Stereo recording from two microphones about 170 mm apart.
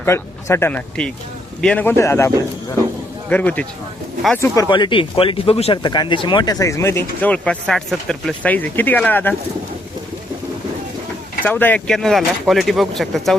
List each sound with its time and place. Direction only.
0.0 s speech: 15° left (ahead or behind)
4.4 s speech: 20° left (ahead or behind)
11.4 s speech: 10° left (ahead or behind)